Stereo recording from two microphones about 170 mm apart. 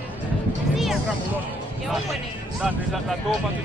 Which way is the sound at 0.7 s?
Centre (ahead or behind).